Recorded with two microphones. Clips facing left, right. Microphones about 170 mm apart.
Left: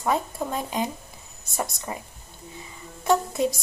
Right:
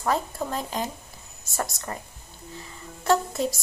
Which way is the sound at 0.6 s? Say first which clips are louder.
Left 4 dB; 15° left (ahead or behind).